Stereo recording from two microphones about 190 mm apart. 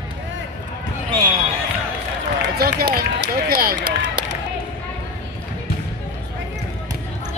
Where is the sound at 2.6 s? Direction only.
55° right (ahead or behind).